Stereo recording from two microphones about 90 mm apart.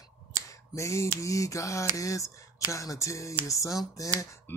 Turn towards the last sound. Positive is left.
turn(degrees=25)  # may be behind; listen again after turning